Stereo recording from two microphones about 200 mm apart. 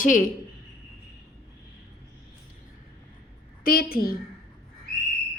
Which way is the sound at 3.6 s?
45° left (ahead or behind).